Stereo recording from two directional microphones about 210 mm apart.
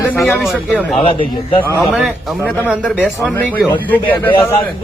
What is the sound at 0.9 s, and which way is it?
Speech, 25° left (ahead or behind).